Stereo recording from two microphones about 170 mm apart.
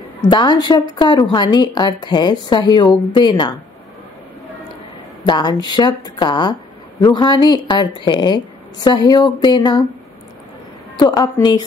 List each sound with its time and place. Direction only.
0.3 s speech: 25° left (ahead or behind)
5.2 s speech: 25° left (ahead or behind)
11.0 s speech: 25° left (ahead or behind)